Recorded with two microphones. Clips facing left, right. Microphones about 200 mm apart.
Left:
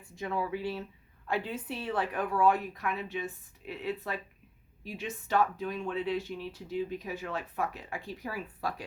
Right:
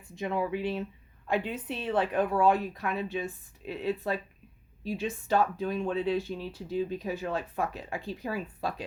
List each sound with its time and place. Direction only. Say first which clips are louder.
0.2 s a woman's voice: right 3 dB; 20° right (ahead or behind)